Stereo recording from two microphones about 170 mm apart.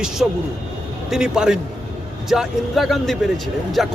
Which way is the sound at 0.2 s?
Centre (ahead or behind).